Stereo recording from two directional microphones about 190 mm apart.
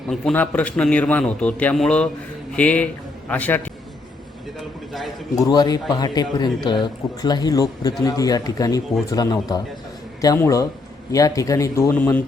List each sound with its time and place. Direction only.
0.1 s a man's voice: 5° left (ahead or behind)
4.9 s a man's voice: centre (ahead or behind)
5.4 s speech: 20° left (ahead or behind)